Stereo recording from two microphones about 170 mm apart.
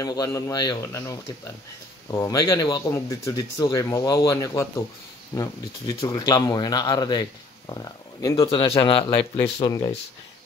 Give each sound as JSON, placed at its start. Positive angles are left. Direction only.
{"t": 0.0, "sound": "speech", "side_deg": 20}